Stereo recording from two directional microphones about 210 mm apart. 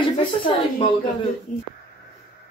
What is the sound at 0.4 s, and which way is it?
Speech, 25° left (ahead or behind).